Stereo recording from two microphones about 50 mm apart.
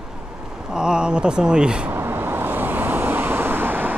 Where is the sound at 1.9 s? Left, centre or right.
Right.